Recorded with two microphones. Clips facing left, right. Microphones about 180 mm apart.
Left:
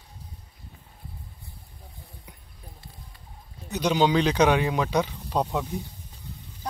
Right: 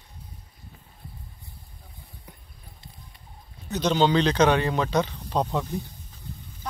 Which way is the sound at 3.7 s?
10° left (ahead or behind).